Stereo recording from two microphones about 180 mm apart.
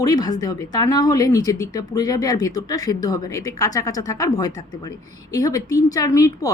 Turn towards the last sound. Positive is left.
turn(degrees=20)  # may be behind; listen again after turning